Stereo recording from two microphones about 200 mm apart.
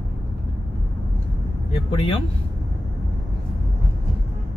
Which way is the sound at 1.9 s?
25° left (ahead or behind).